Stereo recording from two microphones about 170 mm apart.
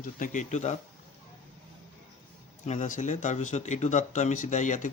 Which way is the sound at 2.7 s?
50° left (ahead or behind).